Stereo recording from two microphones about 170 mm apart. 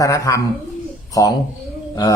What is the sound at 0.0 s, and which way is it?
Speech, 20° left (ahead or behind).